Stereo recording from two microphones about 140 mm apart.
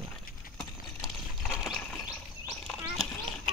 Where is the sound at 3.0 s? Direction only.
Centre (ahead or behind).